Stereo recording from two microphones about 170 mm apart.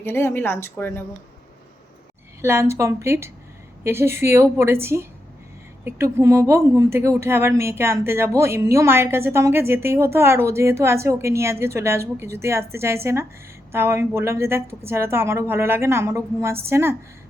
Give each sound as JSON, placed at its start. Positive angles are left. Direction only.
{"t": 0.0, "sound": "speech", "side_deg": 15}
{"t": 2.4, "sound": "speech", "side_deg": -15}